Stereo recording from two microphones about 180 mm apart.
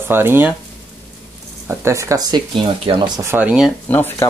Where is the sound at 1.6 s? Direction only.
15° right (ahead or behind).